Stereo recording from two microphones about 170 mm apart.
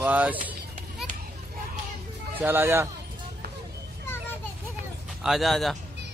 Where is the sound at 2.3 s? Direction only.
15° right (ahead or behind).